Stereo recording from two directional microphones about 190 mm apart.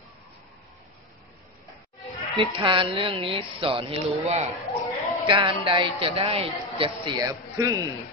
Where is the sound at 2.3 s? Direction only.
25° right (ahead or behind).